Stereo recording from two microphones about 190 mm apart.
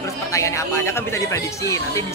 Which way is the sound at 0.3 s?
15° left (ahead or behind).